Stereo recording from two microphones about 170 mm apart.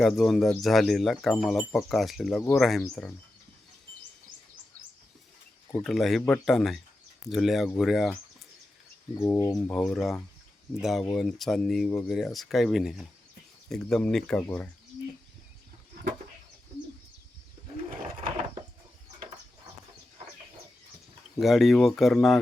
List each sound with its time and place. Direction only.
0.0 s speech: centre (ahead or behind)
5.8 s speech: centre (ahead or behind)
9.2 s speech: 15° left (ahead or behind)
9.6 s speech: 5° left (ahead or behind)
21.4 s speech: centre (ahead or behind)